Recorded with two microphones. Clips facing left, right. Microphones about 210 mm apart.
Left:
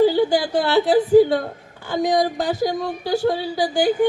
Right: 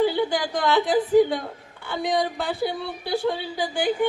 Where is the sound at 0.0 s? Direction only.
35° left (ahead or behind).